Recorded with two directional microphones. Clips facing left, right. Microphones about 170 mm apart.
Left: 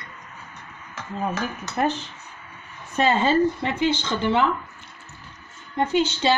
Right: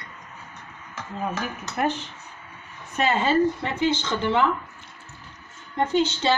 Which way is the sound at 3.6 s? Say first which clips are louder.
Left 1 dB; 20° left (ahead or behind).